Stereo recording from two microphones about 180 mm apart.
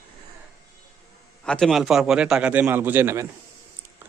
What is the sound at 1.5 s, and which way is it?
A man's voice, centre (ahead or behind).